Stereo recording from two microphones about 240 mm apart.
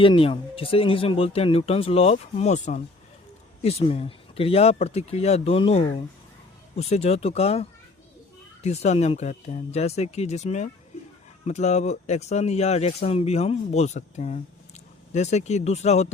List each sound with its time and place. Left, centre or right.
0.0 s speech: left